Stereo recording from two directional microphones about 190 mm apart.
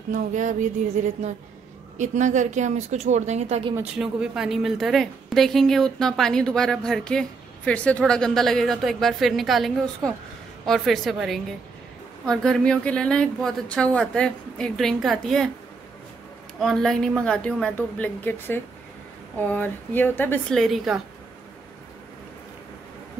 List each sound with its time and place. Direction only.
0.1 s a woman's voice: 40° right (ahead or behind)
3.7 s a woman's voice: 5° right (ahead or behind)
16.5 s a woman's voice: centre (ahead or behind)